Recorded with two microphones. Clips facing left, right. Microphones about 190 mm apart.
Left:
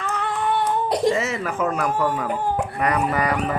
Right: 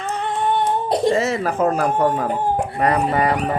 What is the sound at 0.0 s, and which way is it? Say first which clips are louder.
Singing: right 2 dB; 25° right (ahead or behind).